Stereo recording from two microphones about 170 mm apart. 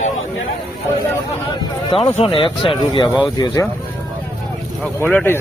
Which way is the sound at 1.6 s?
30° left (ahead or behind).